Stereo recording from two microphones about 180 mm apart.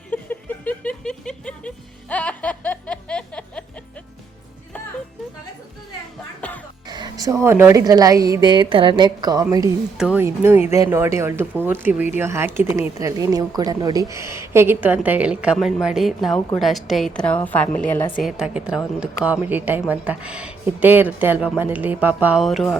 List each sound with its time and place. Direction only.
0.1 s music: 10° left (ahead or behind)
6.4 s music: 5° left (ahead or behind)
6.8 s speech: 25° right (ahead or behind)
10.0 s a woman's voice: 10° right (ahead or behind)